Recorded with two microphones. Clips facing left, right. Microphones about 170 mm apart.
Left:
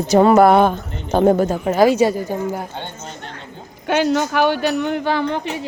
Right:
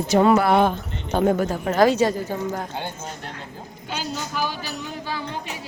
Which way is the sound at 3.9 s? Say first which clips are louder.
Left 13 dB; 70° left (ahead or behind).